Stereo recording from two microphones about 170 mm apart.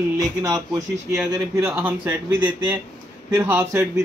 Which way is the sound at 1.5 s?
10° right (ahead or behind).